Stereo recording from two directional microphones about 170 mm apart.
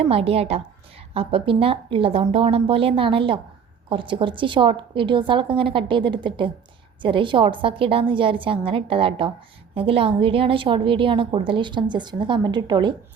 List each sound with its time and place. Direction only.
0.1 s a woman's voice: 35° right (ahead or behind)